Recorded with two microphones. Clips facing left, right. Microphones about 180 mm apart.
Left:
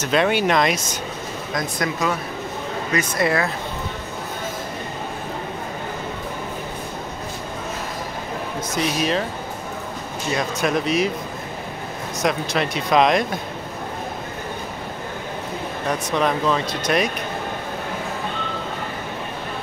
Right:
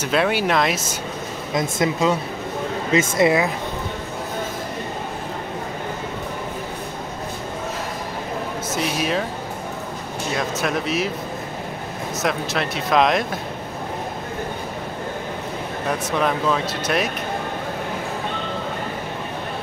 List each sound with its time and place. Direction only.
0.0 s speech: 5° right (ahead or behind)
1.5 s speech: 25° right (ahead or behind)
8.7 s speech: 5° right (ahead or behind)
10.3 s speech: centre (ahead or behind)
12.2 s speech: centre (ahead or behind)
16.1 s speech: 5° right (ahead or behind)